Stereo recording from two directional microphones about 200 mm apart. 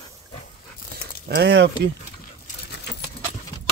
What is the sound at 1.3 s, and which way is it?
Speech, 55° right (ahead or behind).